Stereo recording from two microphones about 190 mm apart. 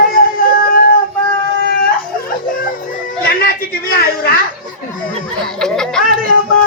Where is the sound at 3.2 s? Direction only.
50° left (ahead or behind).